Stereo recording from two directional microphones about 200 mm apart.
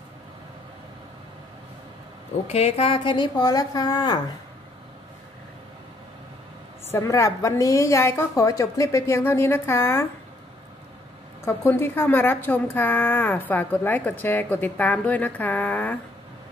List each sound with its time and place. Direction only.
2.4 s a woman's voice: 30° left (ahead or behind)
6.9 s a woman's voice: 15° left (ahead or behind)
11.4 s a woman's voice: 10° left (ahead or behind)